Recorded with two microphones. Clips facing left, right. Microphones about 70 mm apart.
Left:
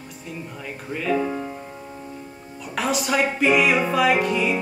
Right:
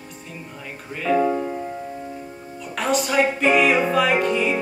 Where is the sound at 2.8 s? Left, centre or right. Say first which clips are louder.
Right 2 dB; centre.